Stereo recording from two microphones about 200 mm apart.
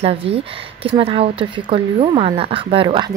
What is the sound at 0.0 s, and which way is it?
Speech, 30° right (ahead or behind).